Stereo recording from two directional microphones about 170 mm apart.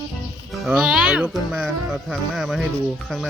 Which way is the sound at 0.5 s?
5° right (ahead or behind).